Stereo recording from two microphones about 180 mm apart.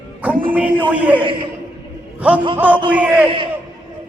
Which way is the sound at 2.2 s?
5° right (ahead or behind).